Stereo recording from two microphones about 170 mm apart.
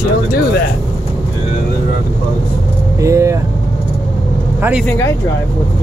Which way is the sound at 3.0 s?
15° right (ahead or behind).